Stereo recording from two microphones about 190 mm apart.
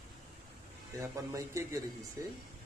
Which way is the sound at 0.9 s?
15° right (ahead or behind).